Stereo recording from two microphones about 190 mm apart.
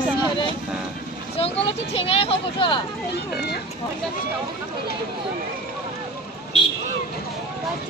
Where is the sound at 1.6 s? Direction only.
30° left (ahead or behind).